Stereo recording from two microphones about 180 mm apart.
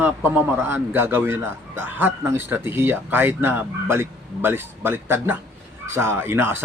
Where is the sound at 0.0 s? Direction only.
10° right (ahead or behind).